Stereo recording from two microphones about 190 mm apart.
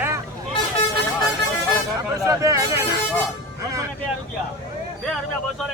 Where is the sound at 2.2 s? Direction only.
15° right (ahead or behind).